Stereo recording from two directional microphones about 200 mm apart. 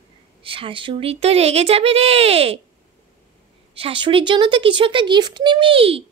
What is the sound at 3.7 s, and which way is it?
Speech, 25° right (ahead or behind).